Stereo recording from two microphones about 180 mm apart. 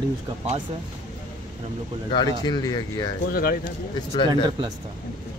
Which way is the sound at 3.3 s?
55° left (ahead or behind).